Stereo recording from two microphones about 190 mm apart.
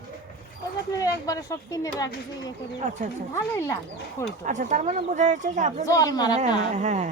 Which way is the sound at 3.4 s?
15° left (ahead or behind).